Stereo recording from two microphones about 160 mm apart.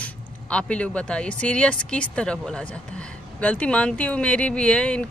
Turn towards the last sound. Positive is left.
turn(degrees=5)  # may be behind; listen again after turning